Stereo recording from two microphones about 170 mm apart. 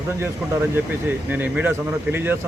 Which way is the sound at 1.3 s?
10° right (ahead or behind).